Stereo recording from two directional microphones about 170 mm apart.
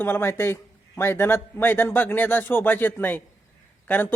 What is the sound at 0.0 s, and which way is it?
A man's voice, 15° left (ahead or behind).